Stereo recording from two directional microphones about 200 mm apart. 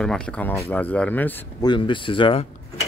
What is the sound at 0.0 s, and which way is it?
A man's voice, 5° left (ahead or behind).